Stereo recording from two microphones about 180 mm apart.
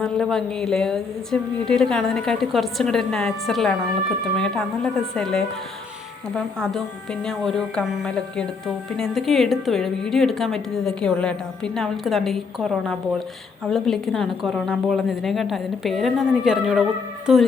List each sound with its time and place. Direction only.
0.0 s a woman's voice: 5° left (ahead or behind)